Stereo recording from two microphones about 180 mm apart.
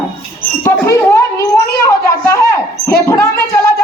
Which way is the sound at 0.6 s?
15° left (ahead or behind).